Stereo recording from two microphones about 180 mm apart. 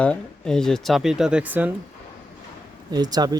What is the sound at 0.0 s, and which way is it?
A man's voice, 5° left (ahead or behind).